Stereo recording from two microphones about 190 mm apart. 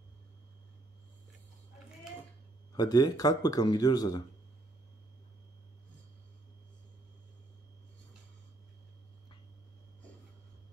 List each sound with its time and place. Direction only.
2.7 s speech: 20° left (ahead or behind)